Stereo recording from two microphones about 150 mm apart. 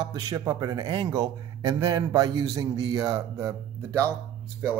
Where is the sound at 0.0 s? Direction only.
25° right (ahead or behind).